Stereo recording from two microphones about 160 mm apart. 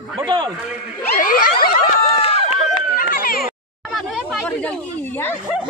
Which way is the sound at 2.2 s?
40° left (ahead or behind).